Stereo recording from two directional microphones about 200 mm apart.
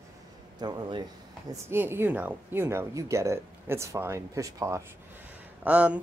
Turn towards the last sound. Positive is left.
turn(degrees=-5)  # may be behind; listen again after turning